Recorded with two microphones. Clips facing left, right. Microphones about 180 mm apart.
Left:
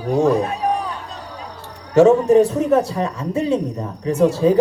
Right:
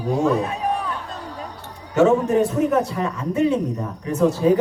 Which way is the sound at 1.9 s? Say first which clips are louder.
Left 5 dB; 30° left (ahead or behind).